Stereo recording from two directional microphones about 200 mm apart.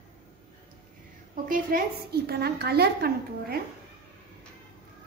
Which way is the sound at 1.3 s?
45° right (ahead or behind).